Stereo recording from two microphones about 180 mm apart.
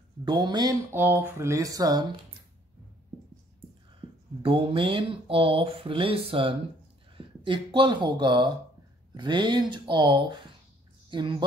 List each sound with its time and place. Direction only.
0.2 s speech: 25° right (ahead or behind)
0.9 s speech: 10° right (ahead or behind)
4.4 s speech: 30° right (ahead or behind)